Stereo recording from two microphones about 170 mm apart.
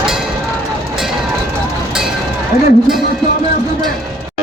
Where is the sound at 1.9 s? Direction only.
Centre (ahead or behind).